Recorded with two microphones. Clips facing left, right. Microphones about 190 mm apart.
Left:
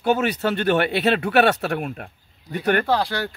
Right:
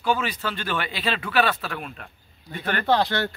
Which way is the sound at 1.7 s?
45° left (ahead or behind).